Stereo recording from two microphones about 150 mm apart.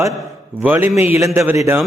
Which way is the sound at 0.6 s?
15° right (ahead or behind).